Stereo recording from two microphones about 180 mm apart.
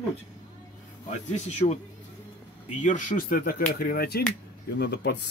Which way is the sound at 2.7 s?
45° left (ahead or behind).